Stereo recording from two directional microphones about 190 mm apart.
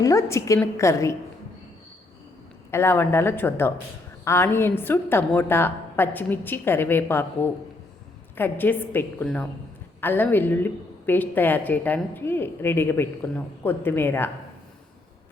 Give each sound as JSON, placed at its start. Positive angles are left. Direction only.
{"t": 0.0, "sound": "a woman's voice", "side_deg": 15}
{"t": 2.6, "sound": "a woman's voice", "side_deg": 15}